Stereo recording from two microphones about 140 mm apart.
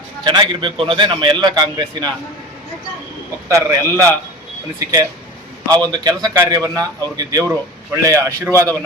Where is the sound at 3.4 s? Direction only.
25° right (ahead or behind).